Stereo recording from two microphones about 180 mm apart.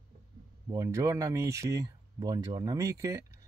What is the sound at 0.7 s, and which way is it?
Speech, 15° right (ahead or behind).